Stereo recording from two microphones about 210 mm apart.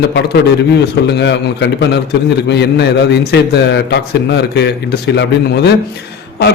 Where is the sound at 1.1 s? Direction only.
55° left (ahead or behind).